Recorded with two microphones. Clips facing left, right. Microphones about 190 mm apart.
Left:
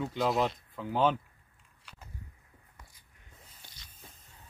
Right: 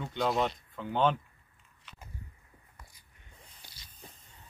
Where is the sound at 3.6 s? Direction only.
10° right (ahead or behind).